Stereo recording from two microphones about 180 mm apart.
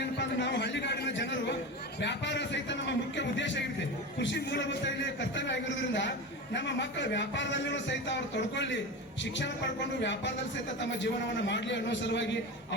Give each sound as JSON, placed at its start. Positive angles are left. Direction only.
{"t": 0.0, "sound": "a sound", "side_deg": 75}
{"t": 4.2, "sound": "a man's voice", "side_deg": 75}
{"t": 10.0, "sound": "a man's voice", "side_deg": 85}